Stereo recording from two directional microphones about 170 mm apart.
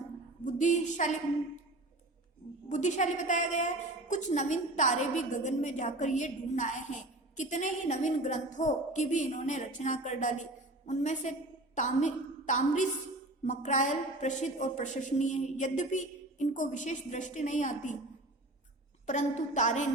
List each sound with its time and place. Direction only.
0.4 s a woman's voice: 45° left (ahead or behind)
2.6 s a woman's voice: 45° left (ahead or behind)
19.0 s a woman's voice: 45° left (ahead or behind)